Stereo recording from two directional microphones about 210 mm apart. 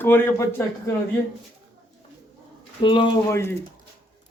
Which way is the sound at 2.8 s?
20° left (ahead or behind).